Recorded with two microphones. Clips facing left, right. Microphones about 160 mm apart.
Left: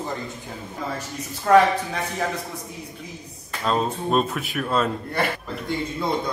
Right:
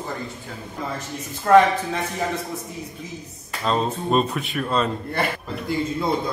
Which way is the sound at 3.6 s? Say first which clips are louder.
Right 1 dB; 5° left (ahead or behind).